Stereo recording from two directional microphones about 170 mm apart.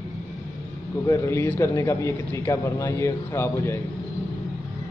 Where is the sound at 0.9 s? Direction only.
20° left (ahead or behind).